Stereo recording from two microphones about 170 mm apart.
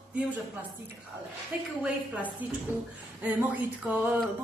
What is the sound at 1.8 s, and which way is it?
Speech, 10° right (ahead or behind).